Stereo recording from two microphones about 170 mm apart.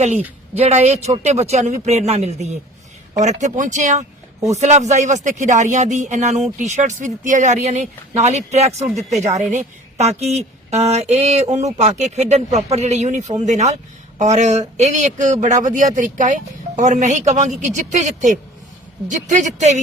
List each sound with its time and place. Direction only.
0.5 s speech: 40° right (ahead or behind)